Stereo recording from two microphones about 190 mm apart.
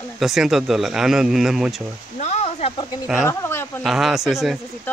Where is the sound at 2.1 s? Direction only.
35° left (ahead or behind).